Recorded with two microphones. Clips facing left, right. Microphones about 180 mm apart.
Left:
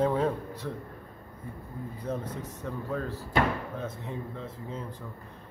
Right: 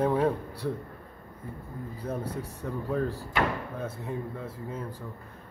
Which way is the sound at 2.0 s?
10° right (ahead or behind).